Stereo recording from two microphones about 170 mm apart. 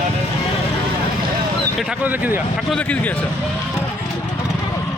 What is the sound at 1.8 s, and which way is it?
Speech, 5° right (ahead or behind).